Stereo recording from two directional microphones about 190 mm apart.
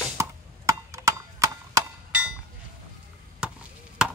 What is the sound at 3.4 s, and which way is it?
Chop, 5° right (ahead or behind).